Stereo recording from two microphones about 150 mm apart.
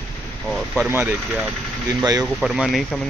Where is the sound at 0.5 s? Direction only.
Centre (ahead or behind).